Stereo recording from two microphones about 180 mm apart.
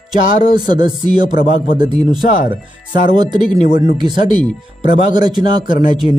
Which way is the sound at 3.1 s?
25° right (ahead or behind).